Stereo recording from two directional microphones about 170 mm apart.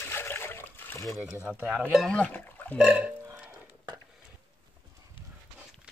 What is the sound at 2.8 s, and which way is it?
Burping, 5° right (ahead or behind).